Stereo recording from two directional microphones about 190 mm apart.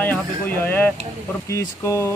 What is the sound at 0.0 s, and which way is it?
Speech, 10° left (ahead or behind).